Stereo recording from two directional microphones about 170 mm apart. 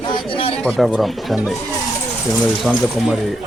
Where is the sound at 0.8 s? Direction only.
Centre (ahead or behind).